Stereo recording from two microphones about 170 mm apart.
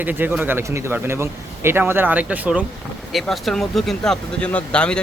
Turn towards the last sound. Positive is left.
turn(degrees=5)  # may be behind; listen again after turning